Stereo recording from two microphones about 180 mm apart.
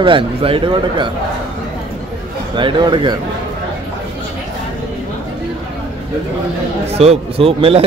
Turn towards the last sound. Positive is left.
turn(degrees=-30)  # may be behind; listen again after turning